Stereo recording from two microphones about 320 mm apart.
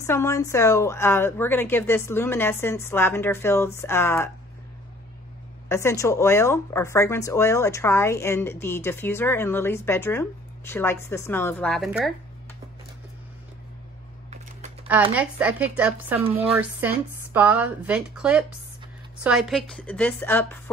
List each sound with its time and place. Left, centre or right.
0.0 s speech: centre
5.7 s speech: centre
15.1 s speech: centre
16.2 s speech: centre
16.4 s speech: centre